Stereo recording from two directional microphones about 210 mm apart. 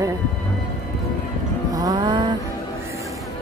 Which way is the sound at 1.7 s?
20° right (ahead or behind).